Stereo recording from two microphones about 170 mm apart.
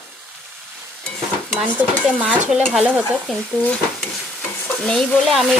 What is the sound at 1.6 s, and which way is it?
Stir, 5° right (ahead or behind).